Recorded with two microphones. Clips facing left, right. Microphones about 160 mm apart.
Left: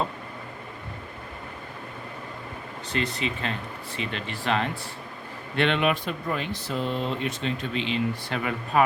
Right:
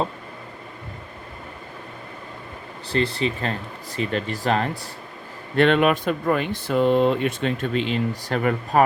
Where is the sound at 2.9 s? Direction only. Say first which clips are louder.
Right 6 dB; 30° right (ahead or behind).